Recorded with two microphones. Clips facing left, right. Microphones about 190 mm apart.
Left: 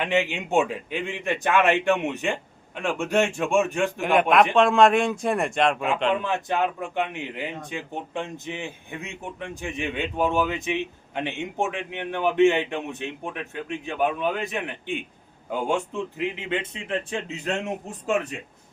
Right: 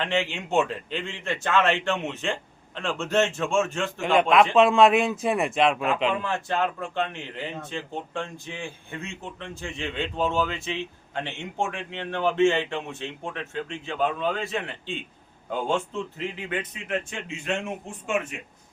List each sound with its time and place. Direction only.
0.0 s a man's voice: 15° left (ahead or behind)
4.0 s speech: centre (ahead or behind)
6.2 s a man's voice: 15° left (ahead or behind); by 18.3 s 35° left (ahead or behind)